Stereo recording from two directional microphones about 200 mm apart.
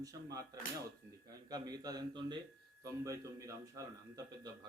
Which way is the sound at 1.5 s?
20° right (ahead or behind).